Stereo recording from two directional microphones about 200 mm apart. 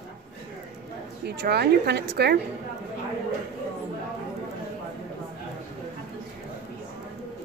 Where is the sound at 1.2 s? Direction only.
55° right (ahead or behind).